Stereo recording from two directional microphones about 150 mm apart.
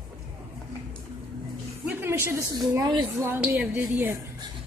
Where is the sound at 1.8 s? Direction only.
15° right (ahead or behind).